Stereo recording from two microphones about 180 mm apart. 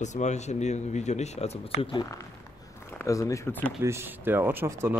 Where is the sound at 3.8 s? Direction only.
15° right (ahead or behind).